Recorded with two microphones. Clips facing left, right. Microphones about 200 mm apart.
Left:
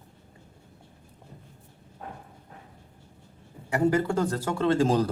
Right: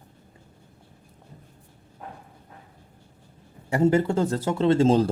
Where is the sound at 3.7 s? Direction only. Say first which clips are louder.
Right 3 dB; 25° right (ahead or behind).